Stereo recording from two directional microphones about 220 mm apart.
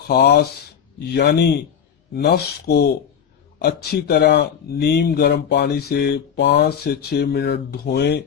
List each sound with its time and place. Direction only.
0.1 s speech: 45° left (ahead or behind)